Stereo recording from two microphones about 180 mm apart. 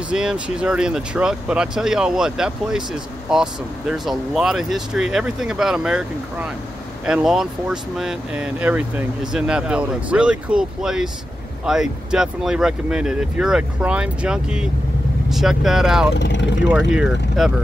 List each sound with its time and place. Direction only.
0.1 s speech: 5° right (ahead or behind)
16.2 s speech: 80° left
16.7 s speech: 5° right (ahead or behind)